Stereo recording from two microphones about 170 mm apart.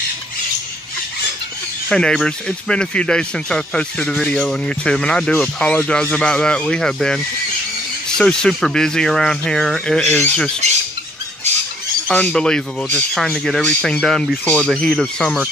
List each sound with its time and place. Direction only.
1.9 s speech: 5° left (ahead or behind)
12.1 s speech: 5° left (ahead or behind)